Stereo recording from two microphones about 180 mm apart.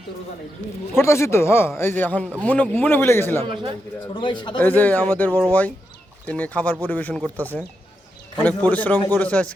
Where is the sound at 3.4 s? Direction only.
30° right (ahead or behind).